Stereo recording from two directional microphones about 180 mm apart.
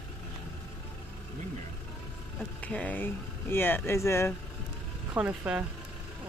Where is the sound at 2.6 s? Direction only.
5° left (ahead or behind).